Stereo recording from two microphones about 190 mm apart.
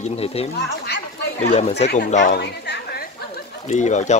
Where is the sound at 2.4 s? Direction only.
60° left (ahead or behind).